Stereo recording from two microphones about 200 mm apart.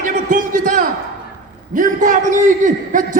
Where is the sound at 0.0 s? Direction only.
40° right (ahead or behind).